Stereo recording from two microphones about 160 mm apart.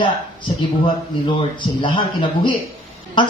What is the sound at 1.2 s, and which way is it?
Speech, 30° left (ahead or behind).